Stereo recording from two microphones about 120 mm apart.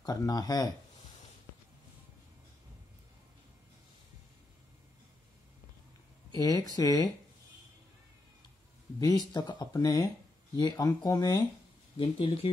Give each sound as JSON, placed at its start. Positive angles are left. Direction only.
{"t": 0.0, "sound": "speech", "side_deg": 30}
{"t": 6.3, "sound": "speech", "side_deg": 30}
{"t": 9.0, "sound": "speech", "side_deg": 35}
{"t": 12.0, "sound": "speech", "side_deg": 55}